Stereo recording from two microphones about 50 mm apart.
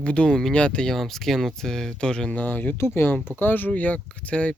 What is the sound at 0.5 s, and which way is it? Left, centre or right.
Speech, centre.